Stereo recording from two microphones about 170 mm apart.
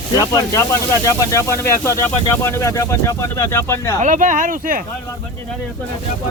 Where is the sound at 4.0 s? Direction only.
50° right (ahead or behind).